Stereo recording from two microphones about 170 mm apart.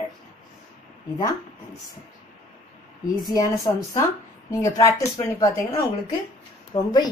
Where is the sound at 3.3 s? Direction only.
25° left (ahead or behind).